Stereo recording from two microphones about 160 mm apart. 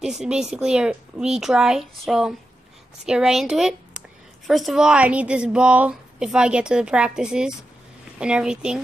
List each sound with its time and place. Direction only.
0.0 s a woman's voice: 5° right (ahead or behind)